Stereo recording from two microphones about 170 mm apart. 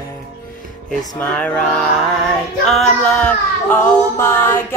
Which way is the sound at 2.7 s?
Centre (ahead or behind).